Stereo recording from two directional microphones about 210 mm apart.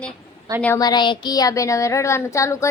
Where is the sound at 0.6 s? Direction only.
15° left (ahead or behind).